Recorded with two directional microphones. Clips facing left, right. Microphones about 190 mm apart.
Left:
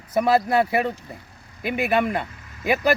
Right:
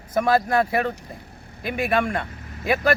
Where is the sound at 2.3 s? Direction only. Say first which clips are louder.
Right 6 dB; 35° right (ahead or behind).